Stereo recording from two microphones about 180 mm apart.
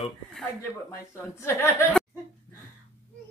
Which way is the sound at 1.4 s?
15° left (ahead or behind).